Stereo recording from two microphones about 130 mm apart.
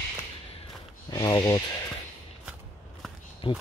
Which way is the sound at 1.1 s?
30° left (ahead or behind).